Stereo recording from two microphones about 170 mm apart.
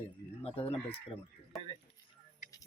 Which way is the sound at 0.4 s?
35° left (ahead or behind).